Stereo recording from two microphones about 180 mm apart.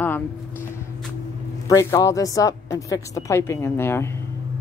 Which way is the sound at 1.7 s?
20° left (ahead or behind).